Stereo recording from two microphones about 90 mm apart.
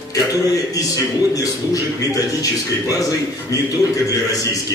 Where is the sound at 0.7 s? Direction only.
40° left (ahead or behind).